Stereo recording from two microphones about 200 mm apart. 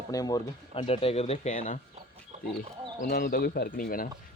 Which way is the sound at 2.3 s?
35° right (ahead or behind).